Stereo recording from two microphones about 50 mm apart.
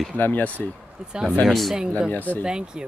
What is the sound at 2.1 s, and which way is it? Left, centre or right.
Speech, left.